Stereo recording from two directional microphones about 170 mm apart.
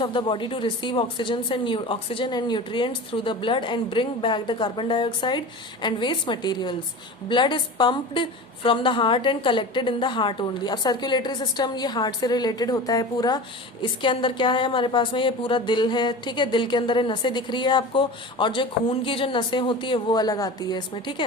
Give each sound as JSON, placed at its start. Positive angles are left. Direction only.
{"t": 0.0, "sound": "a woman's voice", "side_deg": 30}